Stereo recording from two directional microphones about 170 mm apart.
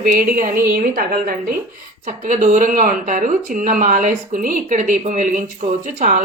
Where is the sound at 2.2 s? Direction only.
50° right (ahead or behind).